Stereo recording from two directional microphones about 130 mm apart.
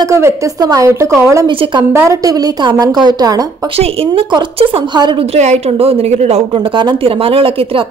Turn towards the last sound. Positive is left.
turn(degrees=-45)  # may be behind; listen again after turning